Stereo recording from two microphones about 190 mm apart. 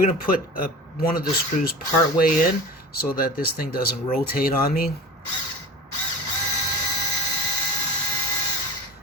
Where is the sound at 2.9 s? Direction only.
50° left (ahead or behind).